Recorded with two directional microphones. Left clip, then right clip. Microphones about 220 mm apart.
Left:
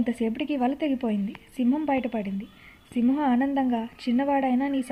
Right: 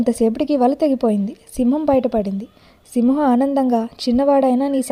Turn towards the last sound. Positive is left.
turn(degrees=-40)  # may be behind; listen again after turning